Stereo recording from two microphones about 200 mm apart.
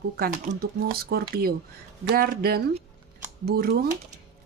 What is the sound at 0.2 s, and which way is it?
Speech, 50° right (ahead or behind).